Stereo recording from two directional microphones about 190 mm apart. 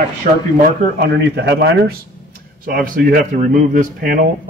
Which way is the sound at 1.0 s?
65° right (ahead or behind).